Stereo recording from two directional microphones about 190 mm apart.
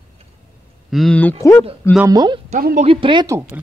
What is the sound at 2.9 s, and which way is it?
Speech, 25° right (ahead or behind).